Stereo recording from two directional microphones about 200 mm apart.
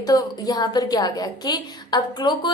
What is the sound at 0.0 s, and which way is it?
A woman's voice, 20° left (ahead or behind).